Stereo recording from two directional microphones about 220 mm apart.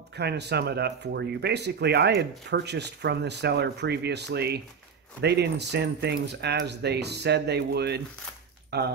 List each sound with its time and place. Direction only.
0.1 s speech: 50° right (ahead or behind)